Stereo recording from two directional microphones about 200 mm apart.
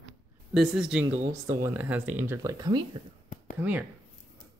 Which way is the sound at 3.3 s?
40° left (ahead or behind).